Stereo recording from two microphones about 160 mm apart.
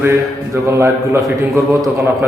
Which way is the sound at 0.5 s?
15° right (ahead or behind).